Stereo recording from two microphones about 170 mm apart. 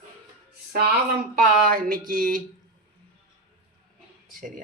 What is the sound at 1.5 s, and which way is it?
Speech, 60° right (ahead or behind).